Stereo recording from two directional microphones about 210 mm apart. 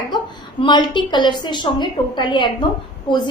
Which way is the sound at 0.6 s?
20° left (ahead or behind).